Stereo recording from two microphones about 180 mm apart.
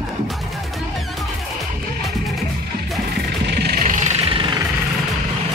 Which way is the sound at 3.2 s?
60° right (ahead or behind).